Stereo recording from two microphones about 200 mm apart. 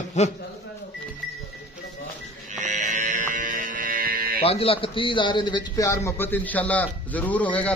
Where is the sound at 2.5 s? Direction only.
35° right (ahead or behind).